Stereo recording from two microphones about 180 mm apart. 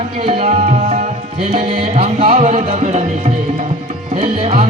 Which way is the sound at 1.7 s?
35° right (ahead or behind).